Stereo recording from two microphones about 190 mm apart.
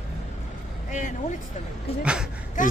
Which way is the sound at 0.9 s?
40° left (ahead or behind).